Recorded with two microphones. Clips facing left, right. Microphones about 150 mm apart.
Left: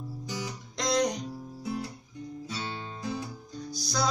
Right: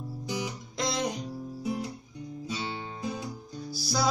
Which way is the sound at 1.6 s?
15° right (ahead or behind).